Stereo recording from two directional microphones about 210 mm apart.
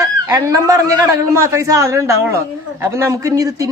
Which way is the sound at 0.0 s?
15° right (ahead or behind).